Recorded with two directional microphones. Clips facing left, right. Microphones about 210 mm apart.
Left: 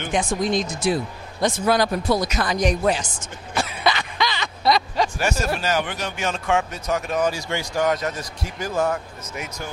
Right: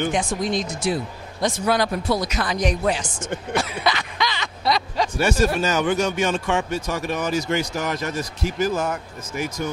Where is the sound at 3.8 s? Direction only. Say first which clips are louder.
Left 1 dB; 30° left (ahead or behind); by 5.0 s 45° left (ahead or behind).